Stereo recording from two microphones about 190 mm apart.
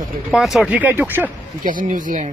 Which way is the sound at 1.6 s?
45° right (ahead or behind).